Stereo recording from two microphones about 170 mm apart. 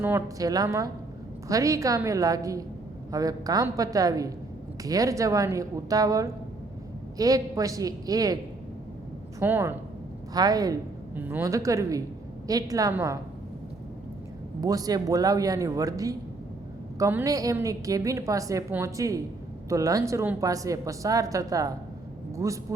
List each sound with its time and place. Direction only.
0.0 s a woman's voice: 15° right (ahead or behind)
9.4 s a woman's voice: 15° right (ahead or behind)
11.1 s a woman's voice: 10° right (ahead or behind)
14.6 s a woman's voice: 20° right (ahead or behind)